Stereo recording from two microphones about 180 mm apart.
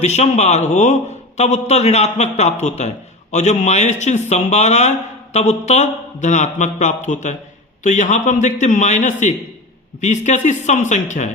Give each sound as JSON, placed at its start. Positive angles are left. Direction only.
{"t": 0.0, "sound": "a man's voice", "side_deg": 40}